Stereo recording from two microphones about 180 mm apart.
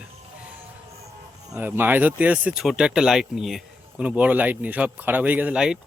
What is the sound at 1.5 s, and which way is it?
Speech, 10° right (ahead or behind).